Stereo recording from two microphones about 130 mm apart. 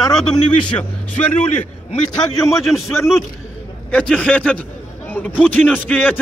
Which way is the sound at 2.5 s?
20° left (ahead or behind).